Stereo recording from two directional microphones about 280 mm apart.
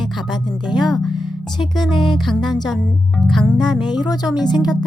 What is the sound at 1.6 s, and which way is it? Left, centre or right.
Speech, centre.